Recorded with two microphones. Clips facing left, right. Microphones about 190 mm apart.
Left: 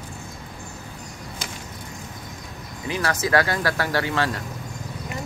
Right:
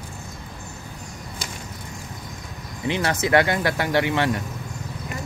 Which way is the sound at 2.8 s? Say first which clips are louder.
Right 2 dB; 25° right (ahead or behind).